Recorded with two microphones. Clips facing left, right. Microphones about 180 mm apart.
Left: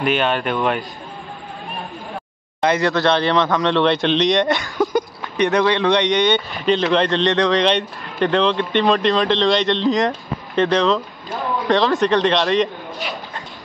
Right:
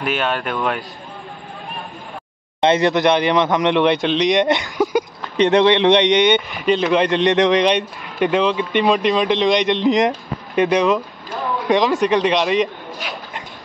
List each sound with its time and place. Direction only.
0.0 s speech: centre (ahead or behind)
2.6 s speech: 20° right (ahead or behind)
6.6 s speech: 5° right (ahead or behind)
8.3 s speech: 5° right (ahead or behind)